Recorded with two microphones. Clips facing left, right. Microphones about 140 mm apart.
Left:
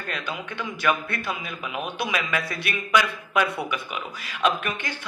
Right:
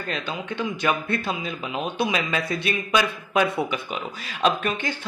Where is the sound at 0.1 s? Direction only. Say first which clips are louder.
Right 2 dB; 25° right (ahead or behind).